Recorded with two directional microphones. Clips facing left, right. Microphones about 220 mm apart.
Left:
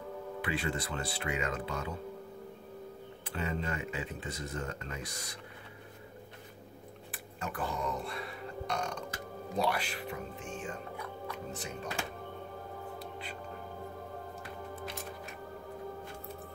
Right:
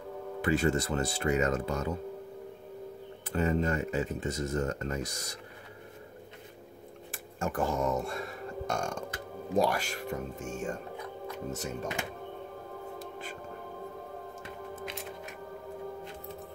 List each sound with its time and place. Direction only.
0.4 s speech: 45° right (ahead or behind)
3.3 s speech: 45° right (ahead or behind)
7.1 s a sound: 45° right (ahead or behind)
9.6 s speech: 45° right (ahead or behind)
13.0 s music: 45° right (ahead or behind)